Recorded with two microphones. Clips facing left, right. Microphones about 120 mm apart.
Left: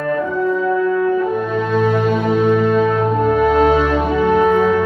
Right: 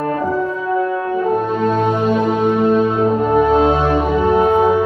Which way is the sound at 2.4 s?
30° right (ahead or behind).